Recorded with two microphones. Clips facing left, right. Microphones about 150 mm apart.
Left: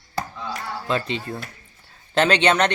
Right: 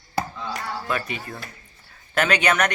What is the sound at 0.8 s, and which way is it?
Speech, 25° left (ahead or behind).